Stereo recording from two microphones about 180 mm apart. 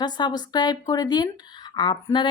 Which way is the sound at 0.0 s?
25° left (ahead or behind).